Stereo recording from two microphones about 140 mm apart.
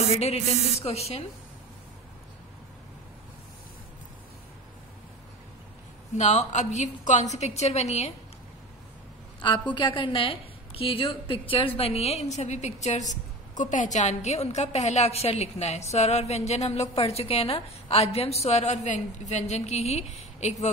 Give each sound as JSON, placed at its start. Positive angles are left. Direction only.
{"t": 0.1, "sound": "a woman's voice", "side_deg": 45}
{"t": 6.1, "sound": "a woman's voice", "side_deg": 55}
{"t": 9.8, "sound": "a woman's voice", "side_deg": 35}